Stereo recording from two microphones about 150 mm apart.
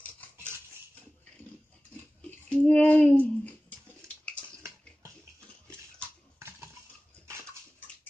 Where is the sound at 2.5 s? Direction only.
5° left (ahead or behind).